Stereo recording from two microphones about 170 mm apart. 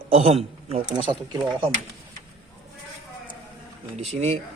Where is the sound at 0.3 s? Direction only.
35° right (ahead or behind).